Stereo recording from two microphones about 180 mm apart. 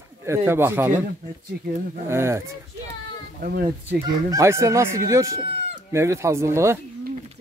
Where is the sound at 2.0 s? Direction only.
15° right (ahead or behind).